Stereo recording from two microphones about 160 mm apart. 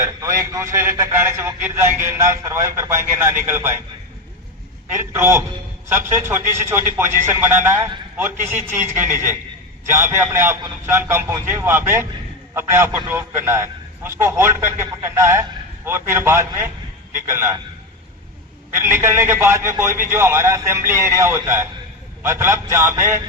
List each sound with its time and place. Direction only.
0.0 s a man's voice: 15° right (ahead or behind)
4.9 s a man's voice: 15° right (ahead or behind)
18.7 s a man's voice: 15° right (ahead or behind)